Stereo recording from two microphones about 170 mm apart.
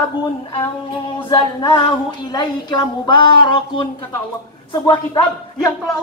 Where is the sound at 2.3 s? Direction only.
25° left (ahead or behind).